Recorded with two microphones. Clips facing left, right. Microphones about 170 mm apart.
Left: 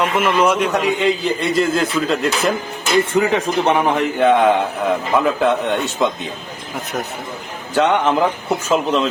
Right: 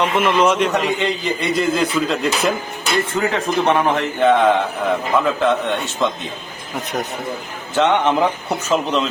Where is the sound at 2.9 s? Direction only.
15° left (ahead or behind).